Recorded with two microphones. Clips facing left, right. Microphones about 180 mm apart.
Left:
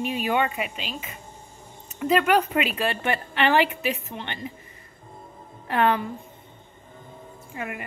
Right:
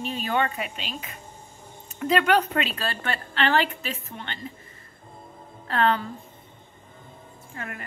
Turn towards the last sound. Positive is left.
turn(degrees=15)  # may be behind; listen again after turning